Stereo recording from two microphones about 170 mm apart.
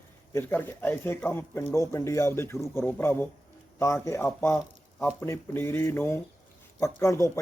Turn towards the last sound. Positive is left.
turn(degrees=15)  # may be behind; listen again after turning